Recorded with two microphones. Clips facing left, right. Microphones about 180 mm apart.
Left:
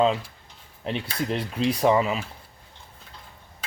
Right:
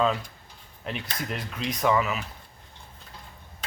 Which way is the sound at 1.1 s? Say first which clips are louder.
Left 7 dB; 30° left (ahead or behind).